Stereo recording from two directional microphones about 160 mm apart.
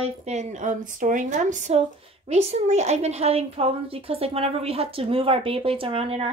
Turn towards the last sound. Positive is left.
turn(degrees=-35)  # may be behind; listen again after turning